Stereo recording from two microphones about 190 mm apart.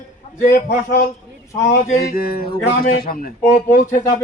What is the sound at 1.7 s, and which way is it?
A man's voice, 50° left (ahead or behind).